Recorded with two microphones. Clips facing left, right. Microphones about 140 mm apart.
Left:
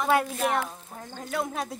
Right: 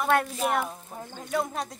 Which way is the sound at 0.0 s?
Centre (ahead or behind).